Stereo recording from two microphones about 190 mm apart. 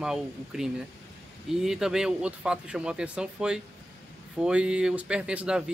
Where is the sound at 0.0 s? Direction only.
5° right (ahead or behind).